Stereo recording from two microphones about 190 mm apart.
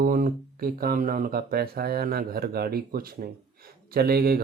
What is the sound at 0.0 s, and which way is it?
Speech, 45° right (ahead or behind).